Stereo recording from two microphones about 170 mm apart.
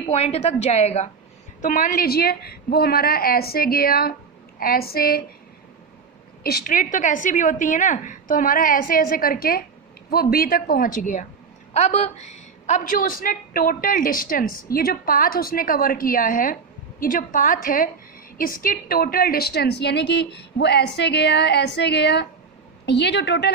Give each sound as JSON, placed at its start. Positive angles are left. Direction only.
{"t": 0.1, "sound": "a woman's voice", "side_deg": 35}
{"t": 1.6, "sound": "a woman's voice", "side_deg": 50}
{"t": 6.4, "sound": "a woman's voice", "side_deg": 60}